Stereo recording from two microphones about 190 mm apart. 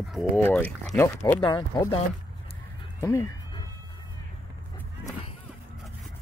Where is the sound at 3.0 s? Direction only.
15° left (ahead or behind).